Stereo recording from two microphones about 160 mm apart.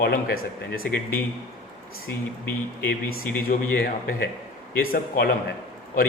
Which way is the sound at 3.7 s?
65° left (ahead or behind).